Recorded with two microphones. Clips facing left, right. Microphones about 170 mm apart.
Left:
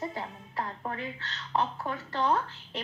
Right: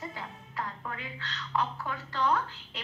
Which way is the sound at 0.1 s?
30° left (ahead or behind).